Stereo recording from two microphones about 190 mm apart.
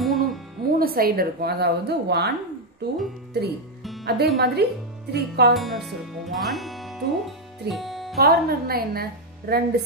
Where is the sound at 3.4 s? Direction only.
60° right (ahead or behind).